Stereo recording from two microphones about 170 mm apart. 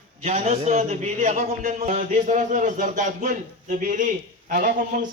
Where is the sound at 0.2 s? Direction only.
40° right (ahead or behind).